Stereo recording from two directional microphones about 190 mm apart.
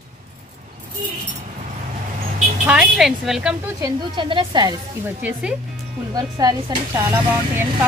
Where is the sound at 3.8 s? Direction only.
25° right (ahead or behind).